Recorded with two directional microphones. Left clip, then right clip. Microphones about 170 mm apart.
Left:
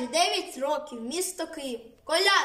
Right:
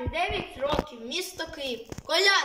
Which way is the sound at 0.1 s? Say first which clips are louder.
Left 5 dB; 15° left (ahead or behind).